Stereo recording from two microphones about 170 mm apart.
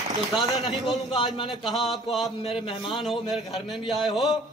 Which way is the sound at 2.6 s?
30° left (ahead or behind).